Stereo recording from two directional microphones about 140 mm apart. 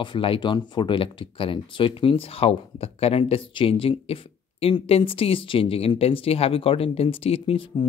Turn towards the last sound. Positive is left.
turn(degrees=45)  # may be behind; listen again after turning